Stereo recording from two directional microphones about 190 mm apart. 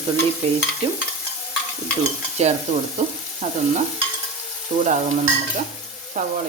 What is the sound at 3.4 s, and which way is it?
Stir, 35° right (ahead or behind).